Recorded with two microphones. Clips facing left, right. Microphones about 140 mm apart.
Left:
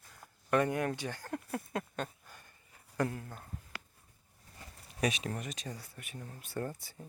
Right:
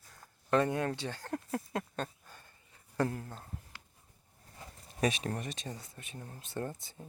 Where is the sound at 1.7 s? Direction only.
30° right (ahead or behind).